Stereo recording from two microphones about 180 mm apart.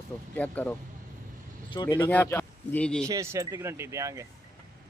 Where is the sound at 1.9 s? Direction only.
10° left (ahead or behind).